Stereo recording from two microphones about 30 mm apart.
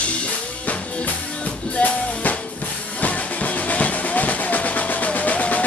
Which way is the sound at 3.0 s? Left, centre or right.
Left.